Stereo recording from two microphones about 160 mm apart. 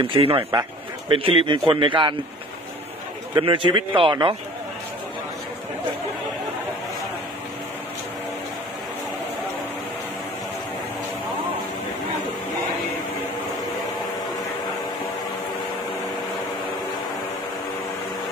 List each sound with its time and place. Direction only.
0.0 s a man's voice: 35° right (ahead or behind)
3.3 s a man's voice: 30° right (ahead or behind)